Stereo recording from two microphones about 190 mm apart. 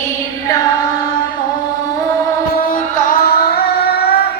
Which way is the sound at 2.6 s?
45° left (ahead or behind).